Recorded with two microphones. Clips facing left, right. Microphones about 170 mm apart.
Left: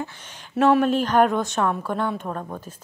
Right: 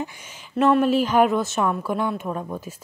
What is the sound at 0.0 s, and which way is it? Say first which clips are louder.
A woman's voice: right 1 dB; 10° right (ahead or behind).